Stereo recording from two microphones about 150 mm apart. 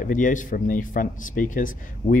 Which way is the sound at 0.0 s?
60° left (ahead or behind).